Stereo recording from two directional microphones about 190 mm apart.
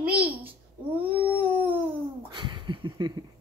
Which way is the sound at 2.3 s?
25° right (ahead or behind).